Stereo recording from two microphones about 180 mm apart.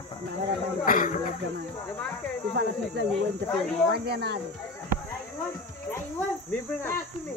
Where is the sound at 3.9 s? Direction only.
65° right (ahead or behind).